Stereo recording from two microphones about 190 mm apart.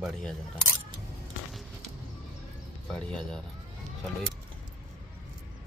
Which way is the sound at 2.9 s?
5° left (ahead or behind).